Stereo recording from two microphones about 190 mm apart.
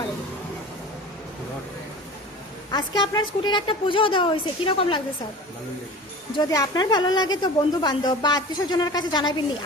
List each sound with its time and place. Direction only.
2.7 s a woman's voice: 20° left (ahead or behind)
6.3 s a woman's voice: 20° left (ahead or behind)